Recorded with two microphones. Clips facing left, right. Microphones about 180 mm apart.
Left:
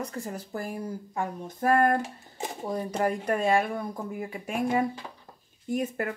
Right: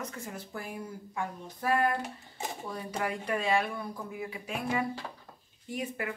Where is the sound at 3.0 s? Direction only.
45° left (ahead or behind).